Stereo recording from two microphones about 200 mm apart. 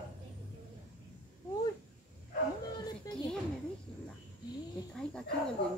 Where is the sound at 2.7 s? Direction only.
20° left (ahead or behind).